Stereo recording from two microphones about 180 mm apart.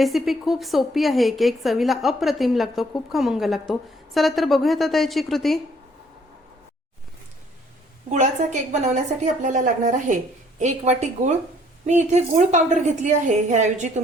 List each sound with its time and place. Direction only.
0.0 s a woman's voice: centre (ahead or behind)
8.1 s a woman's voice: 40° right (ahead or behind)